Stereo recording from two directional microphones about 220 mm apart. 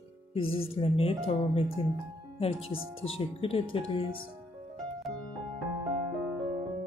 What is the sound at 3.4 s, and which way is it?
Speech, 25° left (ahead or behind).